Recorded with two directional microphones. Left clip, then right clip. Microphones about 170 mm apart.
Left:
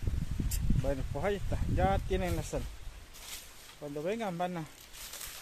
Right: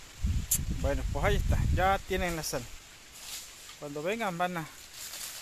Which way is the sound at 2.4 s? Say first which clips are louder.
Right 3 dB; 10° right (ahead or behind).